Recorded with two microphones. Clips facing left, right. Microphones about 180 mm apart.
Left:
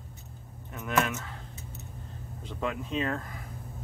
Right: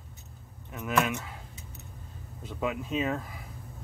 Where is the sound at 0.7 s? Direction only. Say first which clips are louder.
Right 1 dB; centre (ahead or behind).